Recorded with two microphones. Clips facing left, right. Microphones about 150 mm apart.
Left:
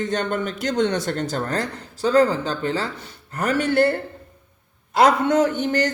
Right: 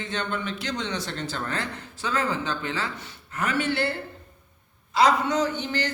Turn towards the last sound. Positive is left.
turn(degrees=50)  # may be behind; listen again after turning